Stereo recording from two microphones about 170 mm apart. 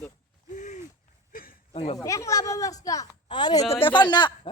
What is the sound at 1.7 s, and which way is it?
Speech, 35° left (ahead or behind).